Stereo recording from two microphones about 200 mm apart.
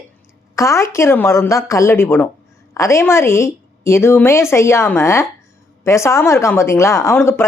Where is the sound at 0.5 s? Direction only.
15° left (ahead or behind).